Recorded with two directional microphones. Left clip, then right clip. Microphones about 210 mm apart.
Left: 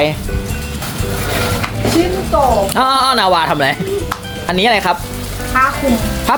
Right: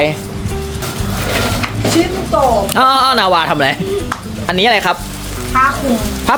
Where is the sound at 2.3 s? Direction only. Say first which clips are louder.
Right 1 dB; 10° right (ahead or behind).